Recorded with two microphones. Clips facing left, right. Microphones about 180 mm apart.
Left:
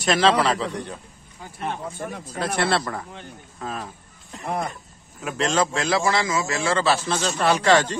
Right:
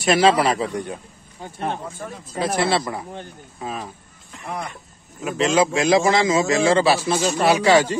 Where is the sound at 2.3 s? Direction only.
Centre (ahead or behind).